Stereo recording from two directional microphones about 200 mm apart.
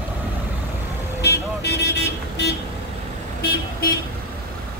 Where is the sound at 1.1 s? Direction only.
55° left (ahead or behind).